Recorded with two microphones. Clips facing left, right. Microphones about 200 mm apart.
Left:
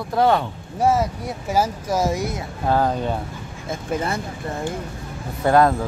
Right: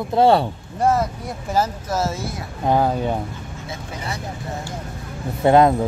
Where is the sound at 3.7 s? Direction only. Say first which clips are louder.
Left 7 dB; 50° left (ahead or behind).